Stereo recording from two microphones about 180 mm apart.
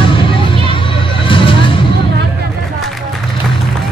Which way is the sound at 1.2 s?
30° left (ahead or behind).